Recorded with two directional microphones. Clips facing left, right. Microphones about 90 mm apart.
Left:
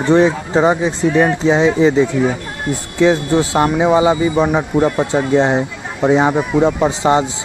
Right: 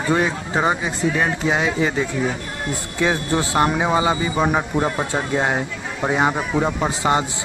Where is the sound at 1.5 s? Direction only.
25° left (ahead or behind).